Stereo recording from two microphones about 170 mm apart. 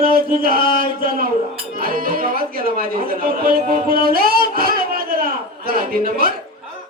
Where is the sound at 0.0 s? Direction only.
60° right (ahead or behind).